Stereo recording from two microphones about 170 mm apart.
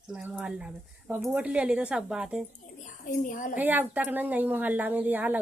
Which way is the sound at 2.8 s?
50° left (ahead or behind).